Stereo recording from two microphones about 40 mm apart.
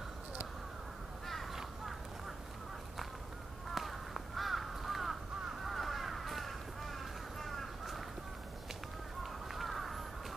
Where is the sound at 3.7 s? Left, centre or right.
Centre.